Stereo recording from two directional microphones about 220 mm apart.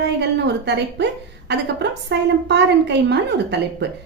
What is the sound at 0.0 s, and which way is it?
A woman's voice, 50° right (ahead or behind).